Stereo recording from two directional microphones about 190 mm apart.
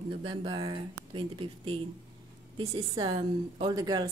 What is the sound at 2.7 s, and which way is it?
A woman's voice, 15° right (ahead or behind).